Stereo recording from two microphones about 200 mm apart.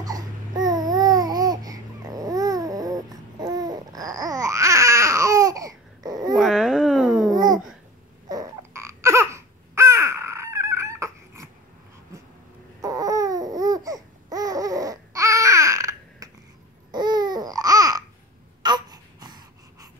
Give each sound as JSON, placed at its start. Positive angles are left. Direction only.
{"t": 0.0, "sound": "babbling", "side_deg": -20}
{"t": 6.3, "sound": "babbling", "side_deg": 0}
{"t": 7.2, "sound": "babbling", "side_deg": -20}
{"t": 8.3, "sound": "a sound", "side_deg": -15}
{"t": 12.8, "sound": "babbling", "side_deg": -15}
{"t": 18.6, "sound": "a sound", "side_deg": -20}